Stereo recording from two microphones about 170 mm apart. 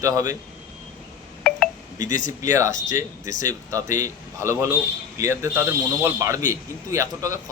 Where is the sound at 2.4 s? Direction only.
20° right (ahead or behind).